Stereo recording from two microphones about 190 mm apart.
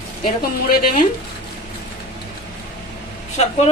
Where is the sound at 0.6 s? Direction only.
50° left (ahead or behind).